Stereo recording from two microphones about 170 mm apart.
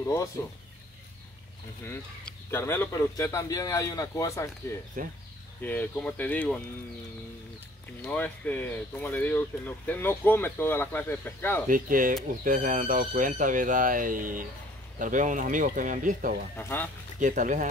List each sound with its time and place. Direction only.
0.0 s speech: 15° left (ahead or behind)
1.9 s speech: 15° left (ahead or behind)
5.0 s speech: 55° right (ahead or behind)
5.6 s speech: 10° left (ahead or behind)
8.0 s speech: 10° left (ahead or behind)
11.6 s speech: 55° right (ahead or behind)
16.5 s speech: 10° left (ahead or behind)
17.2 s speech: 50° right (ahead or behind)